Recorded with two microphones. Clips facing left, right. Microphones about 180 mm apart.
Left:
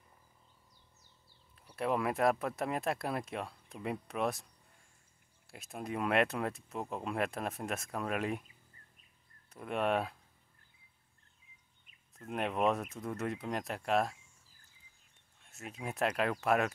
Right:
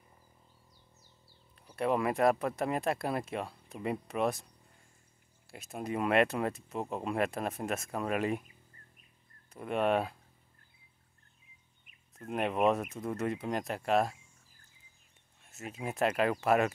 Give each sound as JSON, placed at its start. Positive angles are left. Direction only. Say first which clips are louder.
{"t": 1.5, "sound": "speech", "louder": "right 3 dB", "side_deg": 0}
{"t": 5.5, "sound": "speech", "louder": "right 3 dB", "side_deg": 0}
{"t": 9.5, "sound": "speech", "louder": "right 3 dB", "side_deg": 0}
{"t": 12.2, "sound": "speech", "louder": "right 3 dB", "side_deg": 0}
{"t": 15.5, "sound": "speech", "louder": "right 3 dB", "side_deg": 0}